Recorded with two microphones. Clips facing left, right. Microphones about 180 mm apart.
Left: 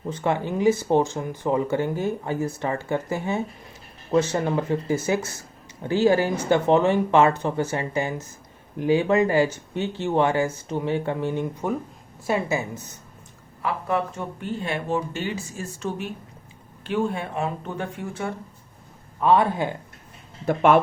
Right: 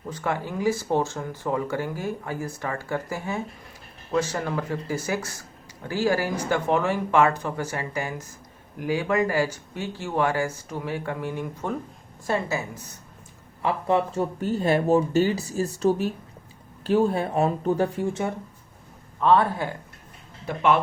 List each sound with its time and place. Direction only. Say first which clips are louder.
0.1 s speech: left 4 dB; 20° left (ahead or behind)
12.2 s a woman's voice: left 2 dB; 15° left (ahead or behind)
13.6 s speech: right 2 dB; 25° right (ahead or behind)
14.4 s speech: right 6 dB; 40° right (ahead or behind)
19.2 s a woman's voice: left 1 dB; 15° left (ahead or behind)
20.5 s speech: left 4 dB; 50° left (ahead or behind)